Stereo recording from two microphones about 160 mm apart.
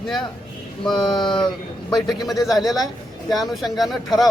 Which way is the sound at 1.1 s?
30° left (ahead or behind).